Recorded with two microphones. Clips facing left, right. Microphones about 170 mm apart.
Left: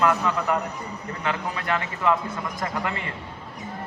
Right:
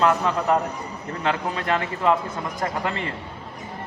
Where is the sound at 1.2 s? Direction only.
30° right (ahead or behind).